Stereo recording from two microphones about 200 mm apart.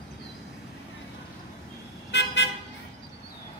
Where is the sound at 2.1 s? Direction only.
60° left (ahead or behind).